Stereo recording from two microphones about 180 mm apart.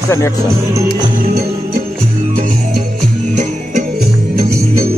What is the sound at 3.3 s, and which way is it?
Music, 40° right (ahead or behind).